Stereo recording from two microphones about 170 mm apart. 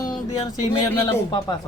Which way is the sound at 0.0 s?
20° left (ahead or behind).